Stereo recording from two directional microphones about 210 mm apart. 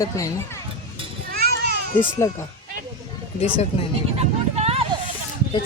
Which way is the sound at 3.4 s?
25° left (ahead or behind).